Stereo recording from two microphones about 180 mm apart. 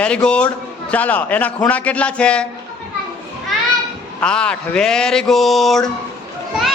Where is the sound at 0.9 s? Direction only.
10° left (ahead or behind).